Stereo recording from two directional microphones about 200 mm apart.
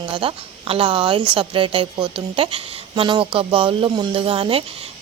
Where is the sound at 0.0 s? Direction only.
25° right (ahead or behind).